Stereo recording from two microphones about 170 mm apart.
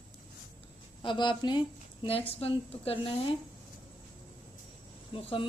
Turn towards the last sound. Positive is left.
turn(degrees=30)  # may be behind; listen again after turning